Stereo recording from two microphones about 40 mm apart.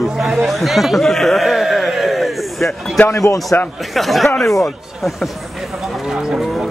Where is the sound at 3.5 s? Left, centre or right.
Left.